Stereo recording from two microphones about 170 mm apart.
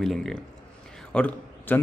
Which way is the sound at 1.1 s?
5° left (ahead or behind).